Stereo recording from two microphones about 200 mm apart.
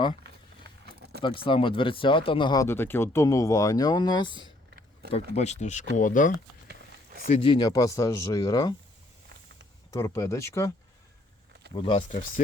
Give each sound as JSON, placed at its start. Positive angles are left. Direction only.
{"t": 1.2, "sound": "speech", "side_deg": 25}
{"t": 5.3, "sound": "speech", "side_deg": 35}
{"t": 6.7, "sound": "a sound", "side_deg": -50}
{"t": 7.4, "sound": "speech", "side_deg": 20}
{"t": 9.9, "sound": "speech", "side_deg": 15}
{"t": 11.7, "sound": "speech", "side_deg": 25}